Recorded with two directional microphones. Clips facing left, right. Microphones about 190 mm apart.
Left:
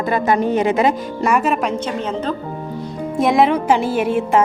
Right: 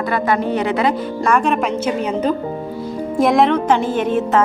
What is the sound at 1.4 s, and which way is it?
Speech, 5° left (ahead or behind).